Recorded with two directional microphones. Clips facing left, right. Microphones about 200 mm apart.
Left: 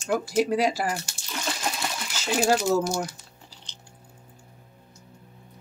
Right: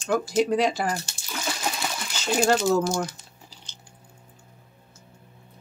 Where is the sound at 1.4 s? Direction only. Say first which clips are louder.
Right 1 dB; 5° right (ahead or behind).